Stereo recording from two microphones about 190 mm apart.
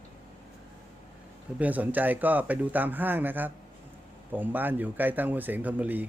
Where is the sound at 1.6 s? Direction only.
10° right (ahead or behind).